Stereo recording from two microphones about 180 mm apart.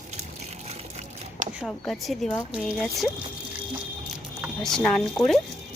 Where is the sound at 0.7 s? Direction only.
40° right (ahead or behind).